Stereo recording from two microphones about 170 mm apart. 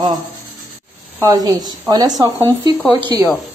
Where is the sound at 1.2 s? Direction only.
20° right (ahead or behind).